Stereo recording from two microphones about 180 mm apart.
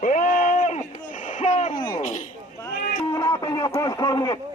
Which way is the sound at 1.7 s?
20° left (ahead or behind).